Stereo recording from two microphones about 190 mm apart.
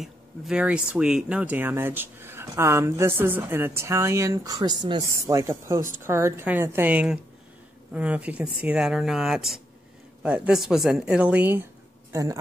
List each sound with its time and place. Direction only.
0.0 s speech: 5° right (ahead or behind)